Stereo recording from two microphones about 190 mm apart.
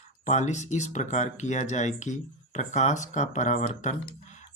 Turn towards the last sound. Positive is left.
turn(degrees=40)  # may be behind; listen again after turning